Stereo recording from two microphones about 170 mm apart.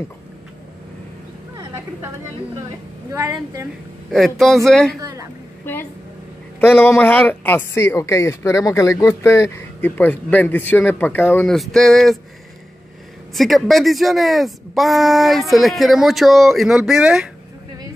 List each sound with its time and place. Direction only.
3.1 s a woman's voice: 15° right (ahead or behind)
4.1 s speech: centre (ahead or behind)
5.0 s a woman's voice: 20° right (ahead or behind)
6.6 s speech: 15° left (ahead or behind)
13.3 s speech: centre (ahead or behind)